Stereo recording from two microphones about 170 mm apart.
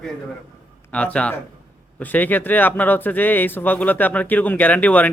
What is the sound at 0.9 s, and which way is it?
Speech, 5° left (ahead or behind).